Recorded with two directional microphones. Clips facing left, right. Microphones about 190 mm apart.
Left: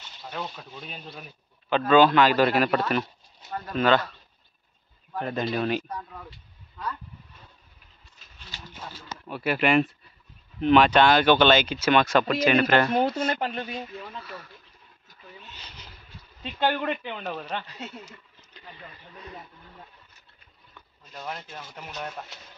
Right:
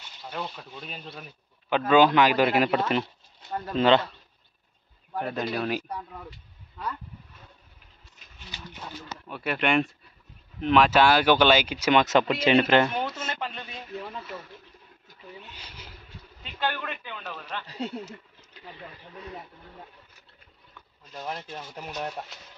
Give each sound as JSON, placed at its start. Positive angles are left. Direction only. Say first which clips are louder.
{"t": 0.2, "sound": "speech", "louder": "even", "side_deg": -5}
{"t": 1.7, "sound": "speech", "louder": "left 1 dB", "side_deg": -15}
{"t": 5.2, "sound": "speech", "louder": "left 2 dB", "side_deg": -5}
{"t": 9.3, "sound": "speech", "louder": "left 3 dB", "side_deg": 5}
{"t": 15.5, "sound": "speech", "louder": "right 1 dB", "side_deg": -10}
{"t": 16.5, "sound": "speech", "louder": "left 5 dB", "side_deg": 25}
{"t": 17.6, "sound": "speech", "louder": "right 7 dB", "side_deg": -35}
{"t": 21.1, "sound": "speech", "louder": "right 2 dB", "side_deg": -25}